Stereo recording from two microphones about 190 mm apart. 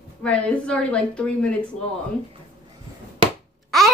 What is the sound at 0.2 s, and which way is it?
A woman's voice, 5° left (ahead or behind).